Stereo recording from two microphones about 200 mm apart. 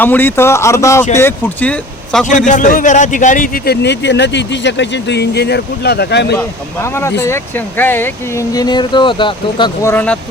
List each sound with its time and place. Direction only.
0.0 s speech: 10° left (ahead or behind)
2.5 s a man's voice: 40° left (ahead or behind); by 6.3 s 55° left (ahead or behind)
6.3 s speech: 10° left (ahead or behind)
9.9 s speech: 10° left (ahead or behind)